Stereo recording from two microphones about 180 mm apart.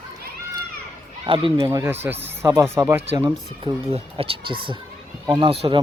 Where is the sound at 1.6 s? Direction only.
20° right (ahead or behind).